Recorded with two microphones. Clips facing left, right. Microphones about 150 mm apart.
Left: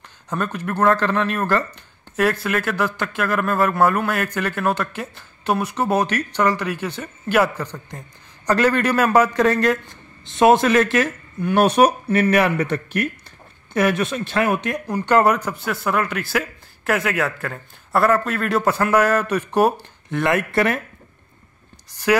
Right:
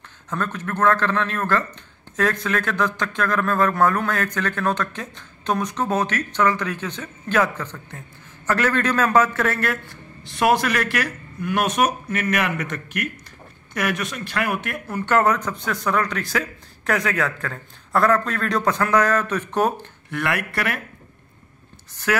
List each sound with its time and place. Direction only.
0.3 s a man's voice: 10° left (ahead or behind)
20.1 s a man's voice: 25° left (ahead or behind)